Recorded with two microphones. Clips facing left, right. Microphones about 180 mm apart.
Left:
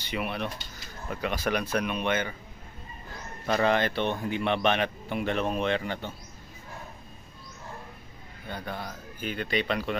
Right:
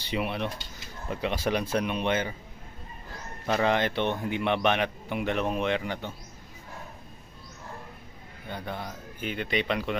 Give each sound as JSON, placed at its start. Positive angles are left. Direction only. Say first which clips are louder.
{"t": 0.1, "sound": "speech", "louder": "right 2 dB", "side_deg": -25}
{"t": 3.4, "sound": "a man's voice", "louder": "even", "side_deg": -15}
{"t": 8.5, "sound": "speech", "louder": "even", "side_deg": -20}